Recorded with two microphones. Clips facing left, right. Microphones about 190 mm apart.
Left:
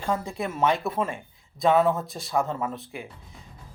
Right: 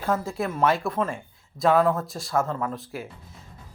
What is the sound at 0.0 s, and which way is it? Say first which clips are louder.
Speech: right 2 dB; 5° right (ahead or behind).